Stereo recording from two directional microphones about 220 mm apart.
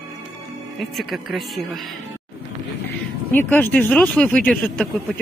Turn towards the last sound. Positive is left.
turn(degrees=0)  # may be behind; listen again after turning